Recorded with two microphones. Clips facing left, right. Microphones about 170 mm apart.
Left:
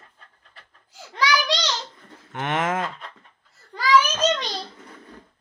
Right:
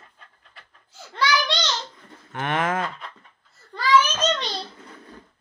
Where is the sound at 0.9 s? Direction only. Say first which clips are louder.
Even; 10° left (ahead or behind).